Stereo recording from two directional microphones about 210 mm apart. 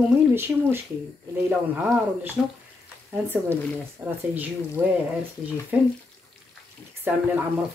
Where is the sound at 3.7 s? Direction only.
10° right (ahead or behind).